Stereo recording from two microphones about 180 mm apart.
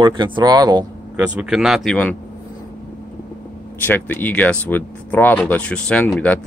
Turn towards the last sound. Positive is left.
turn(degrees=10)  # may be behind; listen again after turning